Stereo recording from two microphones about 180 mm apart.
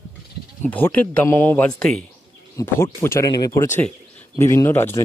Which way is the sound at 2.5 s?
15° left (ahead or behind).